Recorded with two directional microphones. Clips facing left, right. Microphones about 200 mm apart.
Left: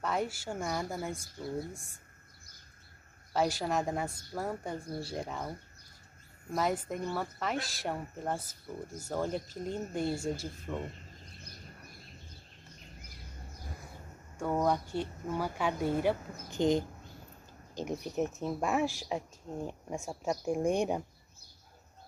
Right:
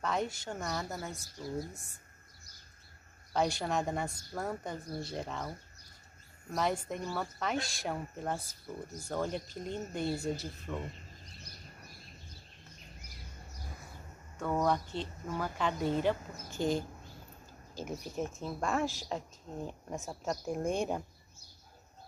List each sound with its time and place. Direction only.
0.0 s speech: 5° left (ahead or behind)
3.3 s speech: 5° left (ahead or behind)
6.5 s speech: 5° left (ahead or behind)
14.4 s speech: 10° left (ahead or behind)